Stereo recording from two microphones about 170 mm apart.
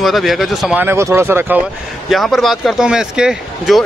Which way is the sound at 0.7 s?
15° right (ahead or behind).